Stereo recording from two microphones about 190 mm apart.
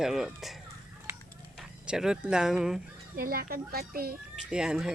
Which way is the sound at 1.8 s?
5° right (ahead or behind).